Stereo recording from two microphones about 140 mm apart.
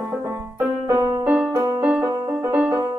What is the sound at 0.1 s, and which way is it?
Music, 15° right (ahead or behind).